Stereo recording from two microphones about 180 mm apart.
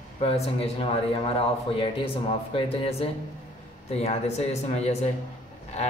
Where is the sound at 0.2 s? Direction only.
30° left (ahead or behind).